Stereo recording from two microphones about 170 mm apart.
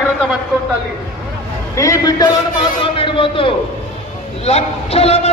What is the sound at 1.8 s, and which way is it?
A man's voice, 20° left (ahead or behind).